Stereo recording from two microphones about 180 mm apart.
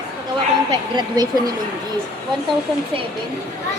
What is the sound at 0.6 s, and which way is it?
Speech, 20° right (ahead or behind).